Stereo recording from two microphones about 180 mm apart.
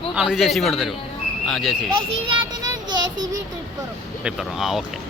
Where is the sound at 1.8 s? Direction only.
25° right (ahead or behind).